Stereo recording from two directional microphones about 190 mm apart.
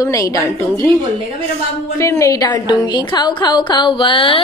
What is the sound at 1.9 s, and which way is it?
A woman's voice, 15° left (ahead or behind).